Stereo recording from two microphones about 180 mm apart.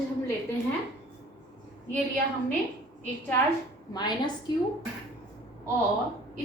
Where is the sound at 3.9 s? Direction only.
25° left (ahead or behind).